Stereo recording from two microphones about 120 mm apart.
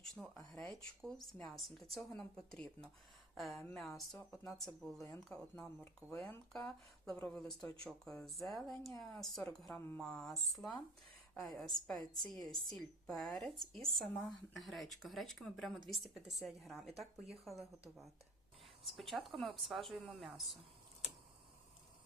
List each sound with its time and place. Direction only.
0.2 s speech: 5° left (ahead or behind)
10.0 s speech: centre (ahead or behind)